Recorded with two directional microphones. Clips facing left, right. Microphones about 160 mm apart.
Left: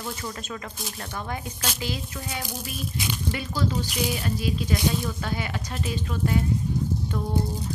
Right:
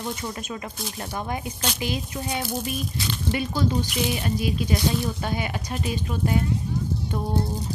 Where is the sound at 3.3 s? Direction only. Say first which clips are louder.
Right 5 dB; 20° right (ahead or behind).